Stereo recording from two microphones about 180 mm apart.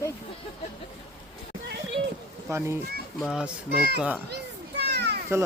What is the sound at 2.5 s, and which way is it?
Speech, 15° right (ahead or behind).